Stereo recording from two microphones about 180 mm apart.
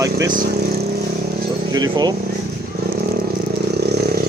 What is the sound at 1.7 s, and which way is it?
Speech, 20° right (ahead or behind).